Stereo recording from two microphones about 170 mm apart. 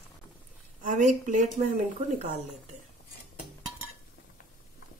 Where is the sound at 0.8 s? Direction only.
45° right (ahead or behind).